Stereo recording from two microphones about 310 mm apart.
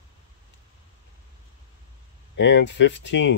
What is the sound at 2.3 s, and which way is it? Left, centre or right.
Speech, left.